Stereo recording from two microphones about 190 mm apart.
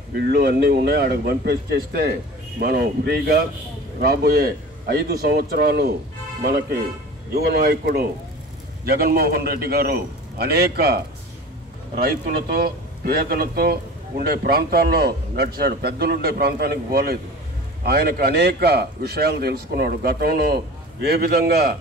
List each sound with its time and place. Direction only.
0.3 s speech: 55° right (ahead or behind)
7.3 s a man's voice: 55° right (ahead or behind)